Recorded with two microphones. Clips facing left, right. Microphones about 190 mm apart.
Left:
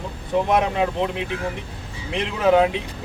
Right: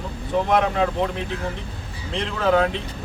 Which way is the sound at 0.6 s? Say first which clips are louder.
Even; 15° left (ahead or behind).